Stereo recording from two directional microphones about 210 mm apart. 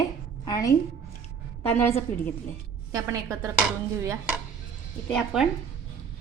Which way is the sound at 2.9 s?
15° right (ahead or behind).